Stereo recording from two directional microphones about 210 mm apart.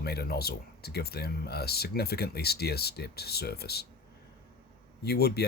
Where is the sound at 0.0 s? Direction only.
50° left (ahead or behind).